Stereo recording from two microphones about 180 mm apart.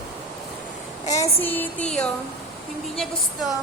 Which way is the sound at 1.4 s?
10° left (ahead or behind).